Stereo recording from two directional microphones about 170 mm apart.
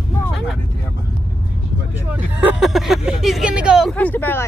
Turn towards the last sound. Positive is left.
turn(degrees=10)  # may be behind; listen again after turning